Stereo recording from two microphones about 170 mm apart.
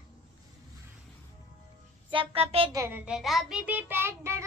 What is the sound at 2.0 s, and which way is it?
Speech, 35° right (ahead or behind).